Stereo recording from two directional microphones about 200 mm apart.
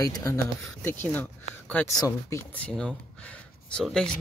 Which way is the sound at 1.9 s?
20° left (ahead or behind).